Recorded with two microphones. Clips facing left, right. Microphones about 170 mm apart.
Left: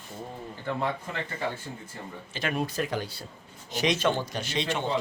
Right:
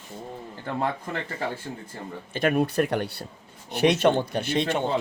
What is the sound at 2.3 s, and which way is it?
A man's voice, 50° right (ahead or behind).